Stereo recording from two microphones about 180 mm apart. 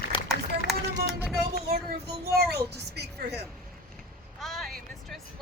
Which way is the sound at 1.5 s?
60° right (ahead or behind).